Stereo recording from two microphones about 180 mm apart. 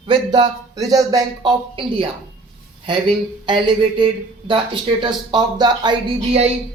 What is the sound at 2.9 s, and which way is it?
Speech, 25° right (ahead or behind).